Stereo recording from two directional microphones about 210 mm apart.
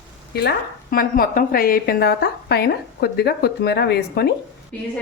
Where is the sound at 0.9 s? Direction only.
45° left (ahead or behind).